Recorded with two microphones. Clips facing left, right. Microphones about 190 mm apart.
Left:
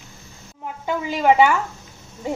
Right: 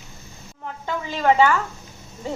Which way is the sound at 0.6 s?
10° left (ahead or behind).